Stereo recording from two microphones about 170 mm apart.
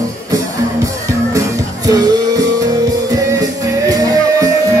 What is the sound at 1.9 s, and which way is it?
Music, 20° right (ahead or behind).